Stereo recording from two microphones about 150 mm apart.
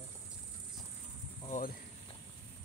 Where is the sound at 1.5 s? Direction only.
70° left (ahead or behind).